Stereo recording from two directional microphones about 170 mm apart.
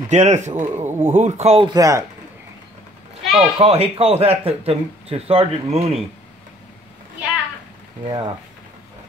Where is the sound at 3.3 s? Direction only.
35° right (ahead or behind).